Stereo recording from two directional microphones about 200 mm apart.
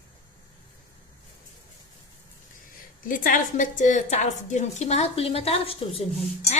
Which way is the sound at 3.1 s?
45° left (ahead or behind).